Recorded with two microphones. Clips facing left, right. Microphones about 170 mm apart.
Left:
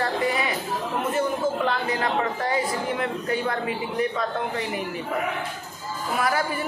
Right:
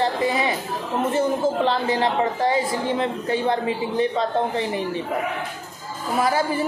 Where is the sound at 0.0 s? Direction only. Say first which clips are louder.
Right 3 dB; 25° right (ahead or behind).